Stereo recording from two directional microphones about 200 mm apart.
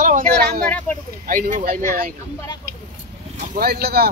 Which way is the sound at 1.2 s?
45° right (ahead or behind).